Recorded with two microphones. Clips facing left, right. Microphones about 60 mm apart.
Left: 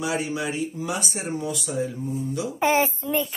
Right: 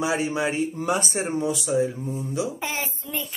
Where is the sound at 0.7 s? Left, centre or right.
Right.